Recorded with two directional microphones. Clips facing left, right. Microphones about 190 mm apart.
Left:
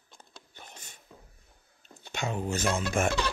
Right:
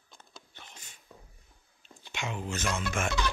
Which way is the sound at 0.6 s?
45° left (ahead or behind).